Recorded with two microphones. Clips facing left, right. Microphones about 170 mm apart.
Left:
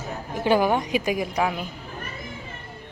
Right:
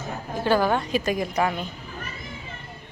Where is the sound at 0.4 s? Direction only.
15° left (ahead or behind).